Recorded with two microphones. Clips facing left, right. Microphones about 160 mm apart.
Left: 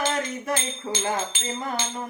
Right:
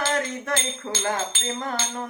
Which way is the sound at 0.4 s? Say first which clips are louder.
Even; 15° left (ahead or behind).